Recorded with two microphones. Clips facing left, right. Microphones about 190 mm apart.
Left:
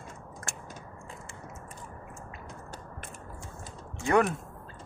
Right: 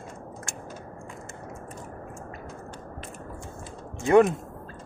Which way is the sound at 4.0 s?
20° right (ahead or behind).